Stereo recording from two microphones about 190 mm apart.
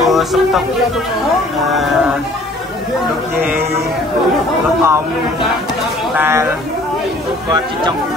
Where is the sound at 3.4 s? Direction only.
10° right (ahead or behind).